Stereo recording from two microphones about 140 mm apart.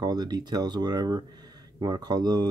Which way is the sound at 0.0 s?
30° right (ahead or behind).